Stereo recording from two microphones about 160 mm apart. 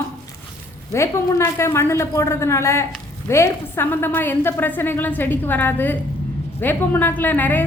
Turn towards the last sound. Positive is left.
turn(degrees=10)  # may be behind; listen again after turning